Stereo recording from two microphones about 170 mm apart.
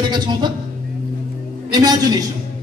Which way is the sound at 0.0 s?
25° right (ahead or behind).